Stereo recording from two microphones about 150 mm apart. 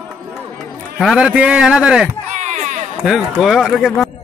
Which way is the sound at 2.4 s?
50° right (ahead or behind).